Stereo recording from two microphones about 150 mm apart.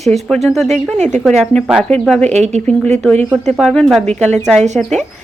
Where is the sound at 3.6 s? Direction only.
5° left (ahead or behind).